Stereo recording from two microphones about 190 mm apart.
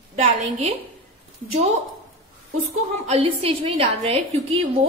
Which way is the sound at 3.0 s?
30° right (ahead or behind).